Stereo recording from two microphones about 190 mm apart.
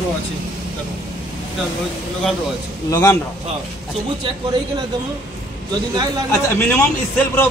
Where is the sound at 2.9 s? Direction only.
15° left (ahead or behind).